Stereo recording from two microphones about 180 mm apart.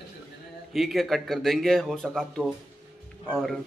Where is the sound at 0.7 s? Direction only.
Centre (ahead or behind).